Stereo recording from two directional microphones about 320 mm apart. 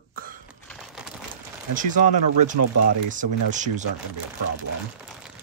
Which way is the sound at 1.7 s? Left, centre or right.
Right.